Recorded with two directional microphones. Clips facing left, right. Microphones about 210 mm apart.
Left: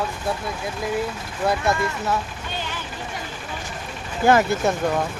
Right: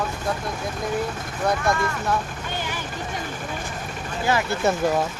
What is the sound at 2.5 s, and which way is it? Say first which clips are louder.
Vehicle: right 1 dB; 15° right (ahead or behind).